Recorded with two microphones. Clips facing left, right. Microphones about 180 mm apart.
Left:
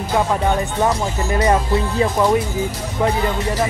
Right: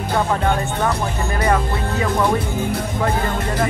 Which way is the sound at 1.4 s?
25° left (ahead or behind).